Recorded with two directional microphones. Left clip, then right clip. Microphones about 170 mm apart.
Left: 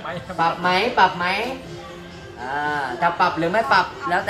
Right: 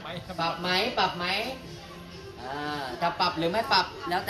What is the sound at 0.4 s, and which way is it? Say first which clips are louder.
Speech: left 8 dB; 30° right (ahead or behind).